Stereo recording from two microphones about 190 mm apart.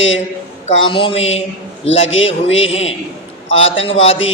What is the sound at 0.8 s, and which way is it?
Speech, 25° left (ahead or behind).